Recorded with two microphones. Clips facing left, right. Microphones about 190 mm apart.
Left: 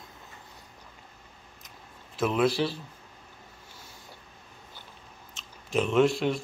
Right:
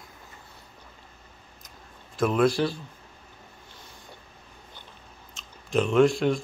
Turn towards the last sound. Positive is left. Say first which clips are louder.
# right 3 dB
turn(degrees=5)  # may be behind; listen again after turning